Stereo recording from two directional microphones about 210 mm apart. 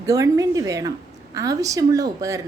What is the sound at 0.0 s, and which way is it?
A woman's voice, 15° right (ahead or behind).